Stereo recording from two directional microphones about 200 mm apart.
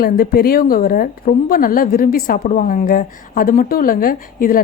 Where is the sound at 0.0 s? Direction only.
50° left (ahead or behind).